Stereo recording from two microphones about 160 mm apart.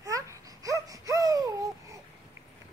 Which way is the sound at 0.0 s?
20° right (ahead or behind).